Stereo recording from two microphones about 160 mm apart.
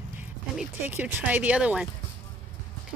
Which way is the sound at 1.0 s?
10° right (ahead or behind).